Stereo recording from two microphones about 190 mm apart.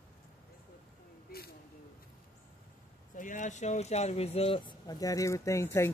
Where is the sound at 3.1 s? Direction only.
45° left (ahead or behind).